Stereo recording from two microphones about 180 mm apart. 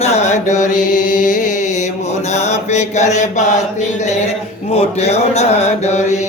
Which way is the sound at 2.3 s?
40° left (ahead or behind).